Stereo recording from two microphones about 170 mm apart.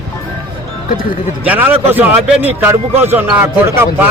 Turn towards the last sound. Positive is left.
turn(degrees=-15)  # may be behind; listen again after turning